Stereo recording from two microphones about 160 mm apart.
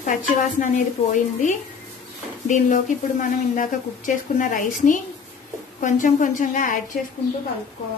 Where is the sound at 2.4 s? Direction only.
50° left (ahead or behind).